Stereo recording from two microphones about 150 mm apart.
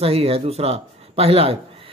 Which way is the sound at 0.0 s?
40° right (ahead or behind).